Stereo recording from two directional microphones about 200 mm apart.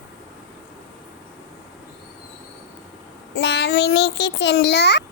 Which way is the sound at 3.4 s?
60° left (ahead or behind).